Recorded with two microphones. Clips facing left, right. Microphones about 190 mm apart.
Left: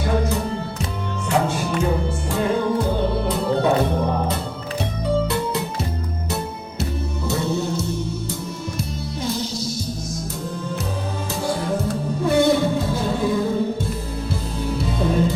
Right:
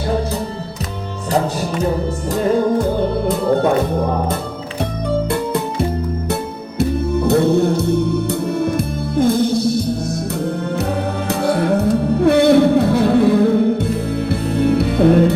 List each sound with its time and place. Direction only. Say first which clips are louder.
3.2 s music: right 7 dB; 50° right (ahead or behind)
6.7 s music: right 11 dB; 60° right (ahead or behind)
11.3 s music: right 7 dB; 65° right (ahead or behind)